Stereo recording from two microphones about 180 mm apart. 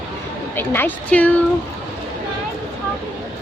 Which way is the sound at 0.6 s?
10° left (ahead or behind).